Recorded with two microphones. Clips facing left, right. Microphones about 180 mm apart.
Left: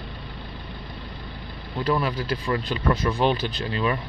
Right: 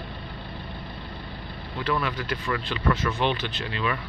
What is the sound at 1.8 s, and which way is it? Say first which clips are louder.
Speech: left 3 dB; 35° left (ahead or behind).